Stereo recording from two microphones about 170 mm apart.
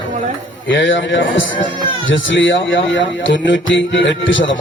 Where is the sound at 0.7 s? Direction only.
90° left.